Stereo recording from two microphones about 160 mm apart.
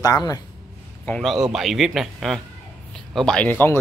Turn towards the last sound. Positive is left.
turn(degrees=10)  # may be behind; listen again after turning